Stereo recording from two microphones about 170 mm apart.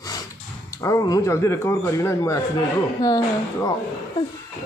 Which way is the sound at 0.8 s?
20° left (ahead or behind).